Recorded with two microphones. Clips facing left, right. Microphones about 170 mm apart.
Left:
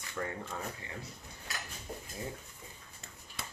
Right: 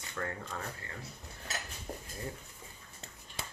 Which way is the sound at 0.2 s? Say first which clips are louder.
Left 1 dB; 15° left (ahead or behind).